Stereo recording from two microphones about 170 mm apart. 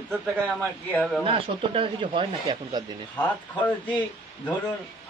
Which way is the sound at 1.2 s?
30° right (ahead or behind).